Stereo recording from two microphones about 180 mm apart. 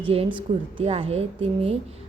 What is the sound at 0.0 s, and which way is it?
A woman's voice, 30° right (ahead or behind).